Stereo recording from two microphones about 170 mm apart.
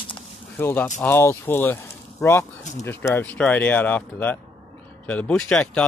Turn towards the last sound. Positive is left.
turn(degrees=5)  # may be behind; listen again after turning